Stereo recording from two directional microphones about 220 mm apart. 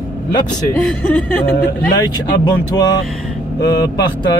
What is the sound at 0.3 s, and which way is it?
Speech, 20° left (ahead or behind).